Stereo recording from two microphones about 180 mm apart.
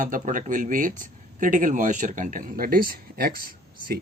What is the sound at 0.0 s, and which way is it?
Speech, 45° right (ahead or behind).